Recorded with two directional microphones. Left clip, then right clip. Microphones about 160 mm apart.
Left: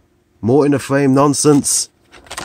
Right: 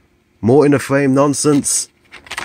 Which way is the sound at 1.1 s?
25° left (ahead or behind).